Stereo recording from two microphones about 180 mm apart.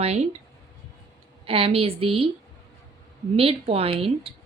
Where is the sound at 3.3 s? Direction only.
30° right (ahead or behind).